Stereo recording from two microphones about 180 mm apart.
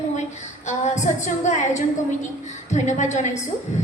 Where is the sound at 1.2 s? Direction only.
40° left (ahead or behind).